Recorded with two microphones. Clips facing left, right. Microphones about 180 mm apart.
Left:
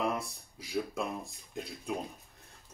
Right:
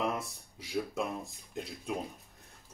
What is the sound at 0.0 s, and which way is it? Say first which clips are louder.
Speech: left 1 dB; centre (ahead or behind).